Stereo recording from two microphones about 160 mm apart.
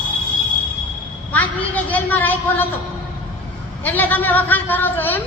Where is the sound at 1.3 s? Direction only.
10° left (ahead or behind).